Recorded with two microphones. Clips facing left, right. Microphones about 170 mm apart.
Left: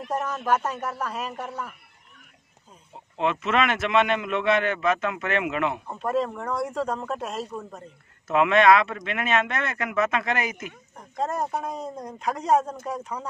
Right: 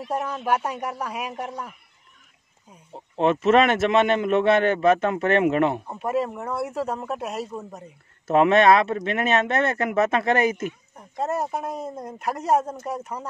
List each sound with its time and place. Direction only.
0.1 s speech: 10° right (ahead or behind)
3.2 s a man's voice: 40° right (ahead or behind)
5.9 s speech: 10° right (ahead or behind)
8.3 s a man's voice: 40° right (ahead or behind)
10.0 s speech: 30° right (ahead or behind)
11.1 s speech: 10° right (ahead or behind)